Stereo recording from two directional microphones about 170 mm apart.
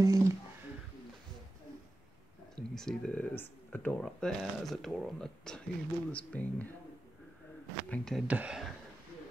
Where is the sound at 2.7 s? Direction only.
Centre (ahead or behind).